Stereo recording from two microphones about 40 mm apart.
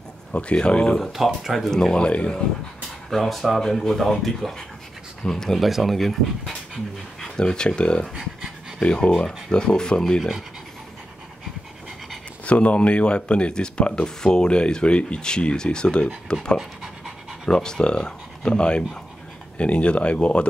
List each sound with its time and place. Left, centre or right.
0.3 s speech: left
1.1 s speech: centre
1.7 s speech: centre
2.0 s speech: left
3.1 s speech: centre
5.6 s speech: centre
7.3 s speech: left
8.1 s speech: right
9.2 s speech: left
12.4 s speech: left
16.5 s pant: centre
17.5 s speech: centre